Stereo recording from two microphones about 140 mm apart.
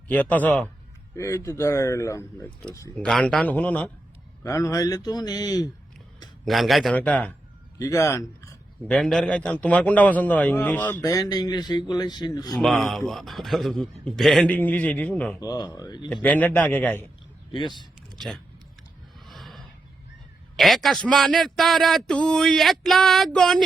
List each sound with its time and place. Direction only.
0.1 s a man's voice: 10° left (ahead or behind)
2.9 s a man's voice: 5° left (ahead or behind)
4.4 s speech: 25° left (ahead or behind)
6.4 s speech: centre (ahead or behind)
6.9 s a man's voice: 10° left (ahead or behind)
7.8 s a man's voice: 20° left (ahead or behind)
8.9 s a man's voice: 5° left (ahead or behind); by 12.5 s 30° left (ahead or behind)
12.5 s speech: centre (ahead or behind)
15.4 s speech: 25° left (ahead or behind)
16.0 s a man's voice: 10° left (ahead or behind)
19.2 s a sound: centre (ahead or behind)
20.6 s speech: centre (ahead or behind)